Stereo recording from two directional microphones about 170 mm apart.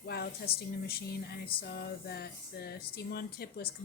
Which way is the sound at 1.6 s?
70° left (ahead or behind).